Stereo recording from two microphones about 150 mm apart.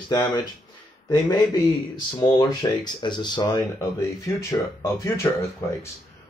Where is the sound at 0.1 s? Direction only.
30° left (ahead or behind).